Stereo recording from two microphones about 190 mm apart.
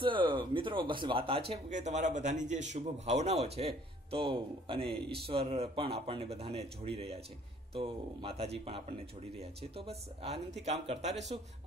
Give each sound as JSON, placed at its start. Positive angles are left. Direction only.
{"t": 0.0, "sound": "speech", "side_deg": -25}
{"t": 1.5, "sound": "speech", "side_deg": -35}